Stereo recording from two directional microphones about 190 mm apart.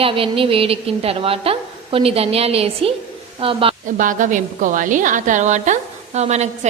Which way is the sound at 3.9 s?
45° right (ahead or behind).